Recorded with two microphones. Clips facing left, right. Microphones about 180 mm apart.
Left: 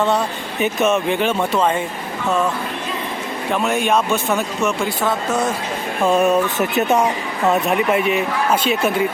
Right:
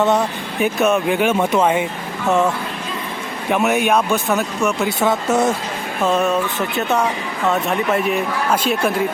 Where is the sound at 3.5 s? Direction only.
10° right (ahead or behind).